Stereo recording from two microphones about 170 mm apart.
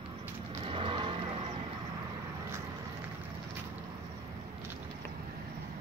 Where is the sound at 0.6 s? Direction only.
30° right (ahead or behind).